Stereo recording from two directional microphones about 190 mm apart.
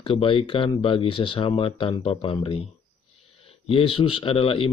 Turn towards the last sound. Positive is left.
turn(degrees=30)  # may be behind; listen again after turning